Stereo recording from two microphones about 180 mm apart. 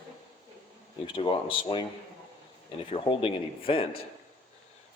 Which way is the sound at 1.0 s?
30° left (ahead or behind).